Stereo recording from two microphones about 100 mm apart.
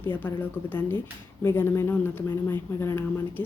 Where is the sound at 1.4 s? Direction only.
25° left (ahead or behind).